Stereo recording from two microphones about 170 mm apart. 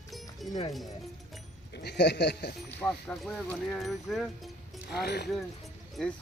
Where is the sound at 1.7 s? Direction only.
80° left.